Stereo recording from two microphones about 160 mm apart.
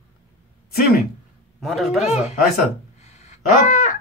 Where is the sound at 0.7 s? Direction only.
70° left (ahead or behind).